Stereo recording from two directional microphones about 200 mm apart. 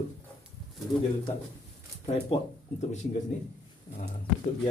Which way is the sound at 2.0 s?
30° left (ahead or behind).